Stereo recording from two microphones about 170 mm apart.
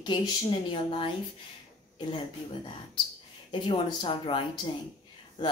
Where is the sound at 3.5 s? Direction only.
25° left (ahead or behind).